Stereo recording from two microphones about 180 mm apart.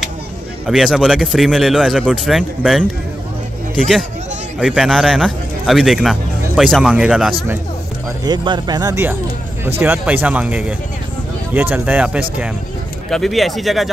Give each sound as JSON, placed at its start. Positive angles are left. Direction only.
{"t": 0.7, "sound": "speech", "side_deg": 0}
{"t": 4.6, "sound": "speech", "side_deg": 0}
{"t": 8.2, "sound": "speech", "side_deg": -25}